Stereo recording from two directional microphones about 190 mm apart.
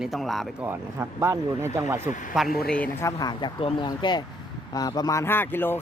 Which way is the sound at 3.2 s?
20° left (ahead or behind).